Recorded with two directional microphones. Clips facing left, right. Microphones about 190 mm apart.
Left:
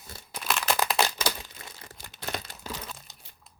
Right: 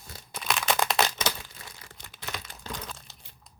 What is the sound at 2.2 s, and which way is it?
Crumpling, 35° left (ahead or behind).